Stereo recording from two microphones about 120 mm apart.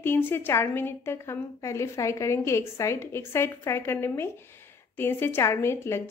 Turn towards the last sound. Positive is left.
turn(degrees=20)  # may be behind; listen again after turning